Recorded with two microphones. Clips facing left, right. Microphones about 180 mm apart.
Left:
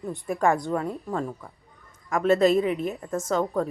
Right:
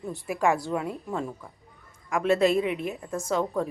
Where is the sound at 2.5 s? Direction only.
35° left (ahead or behind).